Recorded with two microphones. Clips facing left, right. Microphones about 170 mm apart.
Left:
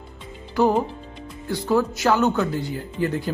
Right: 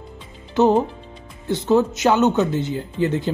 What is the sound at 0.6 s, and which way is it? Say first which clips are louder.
Speech: right 3 dB; 20° right (ahead or behind).